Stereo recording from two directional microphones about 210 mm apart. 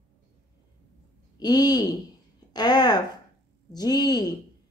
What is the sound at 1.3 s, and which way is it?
A woman's voice, 20° left (ahead or behind).